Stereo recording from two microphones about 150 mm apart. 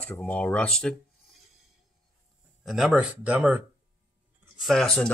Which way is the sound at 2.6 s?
Centre (ahead or behind).